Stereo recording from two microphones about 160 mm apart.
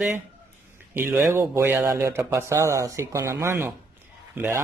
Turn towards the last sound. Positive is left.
turn(degrees=-10)  # may be behind; listen again after turning